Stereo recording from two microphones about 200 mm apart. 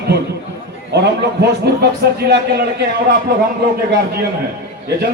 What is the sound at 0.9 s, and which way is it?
A man's voice, 55° right (ahead or behind).